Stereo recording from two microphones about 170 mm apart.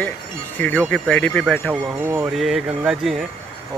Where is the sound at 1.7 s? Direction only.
15° right (ahead or behind).